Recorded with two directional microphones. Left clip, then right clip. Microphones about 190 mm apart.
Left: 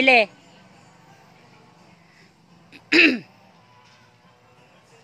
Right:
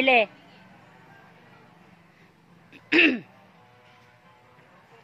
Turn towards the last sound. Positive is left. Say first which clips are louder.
# left 4 dB
turn(degrees=10)  # may be behind; listen again after turning